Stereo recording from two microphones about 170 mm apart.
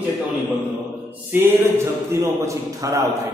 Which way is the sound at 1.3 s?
15° right (ahead or behind).